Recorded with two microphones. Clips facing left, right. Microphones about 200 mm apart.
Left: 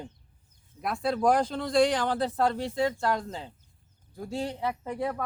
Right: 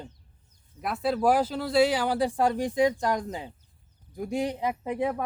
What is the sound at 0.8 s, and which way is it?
Speech, 5° right (ahead or behind).